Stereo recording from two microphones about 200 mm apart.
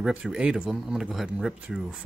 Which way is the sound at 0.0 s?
5° right (ahead or behind).